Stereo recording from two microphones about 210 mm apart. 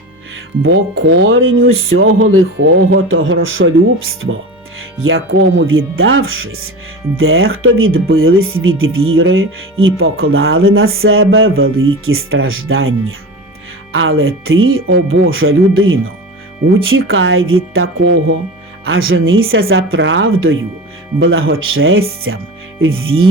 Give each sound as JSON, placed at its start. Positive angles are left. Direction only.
{"t": 0.6, "sound": "speech", "side_deg": -65}
{"t": 4.8, "sound": "speech", "side_deg": -75}
{"t": 18.9, "sound": "speech", "side_deg": -70}